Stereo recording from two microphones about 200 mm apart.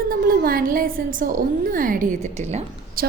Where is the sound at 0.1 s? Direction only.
45° right (ahead or behind).